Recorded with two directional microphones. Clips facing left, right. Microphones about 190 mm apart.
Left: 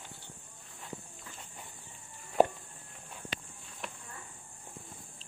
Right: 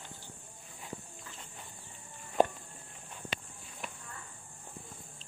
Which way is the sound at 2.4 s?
5° left (ahead or behind).